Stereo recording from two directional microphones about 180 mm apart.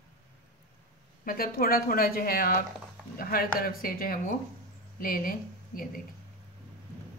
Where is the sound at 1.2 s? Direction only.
55° left (ahead or behind).